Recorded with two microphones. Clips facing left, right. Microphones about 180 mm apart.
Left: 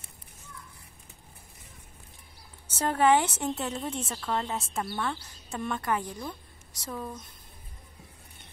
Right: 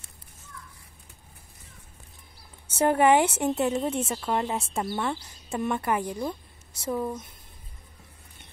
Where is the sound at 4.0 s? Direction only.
20° right (ahead or behind).